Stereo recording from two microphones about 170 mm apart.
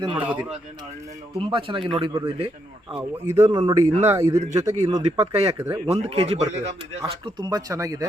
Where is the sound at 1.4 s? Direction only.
30° right (ahead or behind).